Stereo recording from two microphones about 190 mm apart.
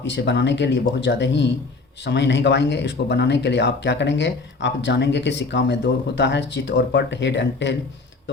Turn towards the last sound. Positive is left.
turn(degrees=65)  # may be behind; listen again after turning